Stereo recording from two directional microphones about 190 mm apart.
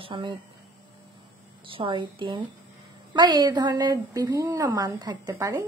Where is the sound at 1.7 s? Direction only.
25° right (ahead or behind).